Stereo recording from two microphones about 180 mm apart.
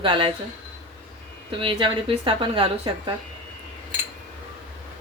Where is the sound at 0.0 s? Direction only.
30° right (ahead or behind).